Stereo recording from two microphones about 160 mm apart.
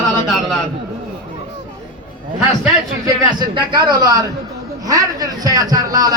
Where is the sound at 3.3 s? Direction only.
25° right (ahead or behind).